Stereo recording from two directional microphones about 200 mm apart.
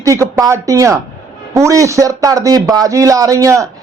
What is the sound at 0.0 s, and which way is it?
A man's voice, 15° right (ahead or behind).